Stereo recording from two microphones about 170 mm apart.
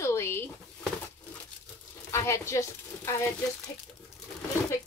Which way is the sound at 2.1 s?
15° left (ahead or behind).